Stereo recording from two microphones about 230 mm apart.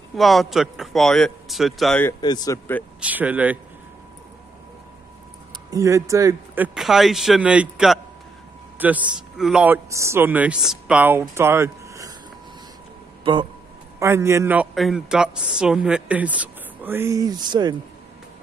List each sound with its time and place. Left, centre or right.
0.1 s a man's voice: centre
2.2 s speech: centre
3.0 s a man's voice: centre
5.7 s a man's voice: centre
13.2 s a man's voice: right